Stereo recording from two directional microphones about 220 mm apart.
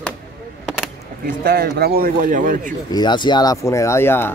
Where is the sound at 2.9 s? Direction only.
20° left (ahead or behind).